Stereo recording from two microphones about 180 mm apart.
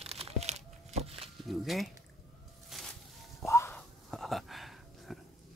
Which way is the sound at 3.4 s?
15° left (ahead or behind).